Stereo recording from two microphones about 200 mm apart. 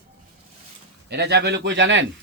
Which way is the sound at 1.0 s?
55° right (ahead or behind).